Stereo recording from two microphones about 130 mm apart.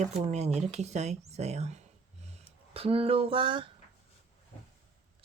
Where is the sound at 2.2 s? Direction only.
45° right (ahead or behind).